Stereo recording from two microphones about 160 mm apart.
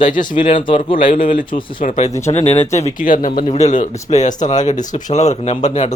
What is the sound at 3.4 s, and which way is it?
Speech, 40° left (ahead or behind).